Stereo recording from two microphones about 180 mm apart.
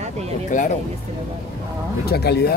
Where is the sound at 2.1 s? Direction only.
60° left (ahead or behind).